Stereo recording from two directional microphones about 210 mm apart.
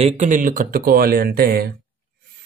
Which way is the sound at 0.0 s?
35° right (ahead or behind).